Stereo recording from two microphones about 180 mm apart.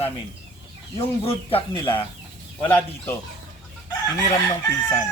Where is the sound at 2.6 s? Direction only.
10° left (ahead or behind).